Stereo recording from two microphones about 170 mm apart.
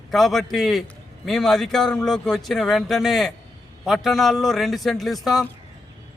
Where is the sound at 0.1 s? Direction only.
Centre (ahead or behind).